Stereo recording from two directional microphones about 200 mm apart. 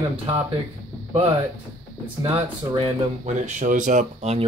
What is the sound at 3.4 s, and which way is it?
Speech, 40° right (ahead or behind).